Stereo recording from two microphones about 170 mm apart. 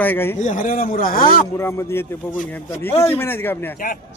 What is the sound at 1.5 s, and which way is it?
Speech, 15° left (ahead or behind).